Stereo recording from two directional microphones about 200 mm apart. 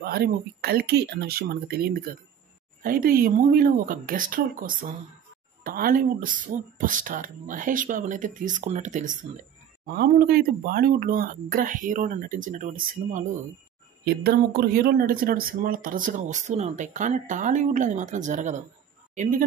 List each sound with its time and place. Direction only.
0.0 s speech: 50° right (ahead or behind)
9.8 s speech: 50° right (ahead or behind)
14.0 s speech: 50° right (ahead or behind)